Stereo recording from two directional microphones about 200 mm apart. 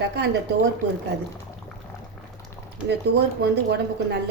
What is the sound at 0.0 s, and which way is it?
Speech, 55° right (ahead or behind).